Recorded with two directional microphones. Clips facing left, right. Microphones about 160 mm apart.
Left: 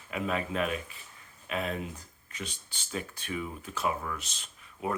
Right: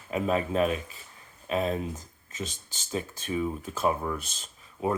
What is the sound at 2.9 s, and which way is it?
Speech, 30° right (ahead or behind).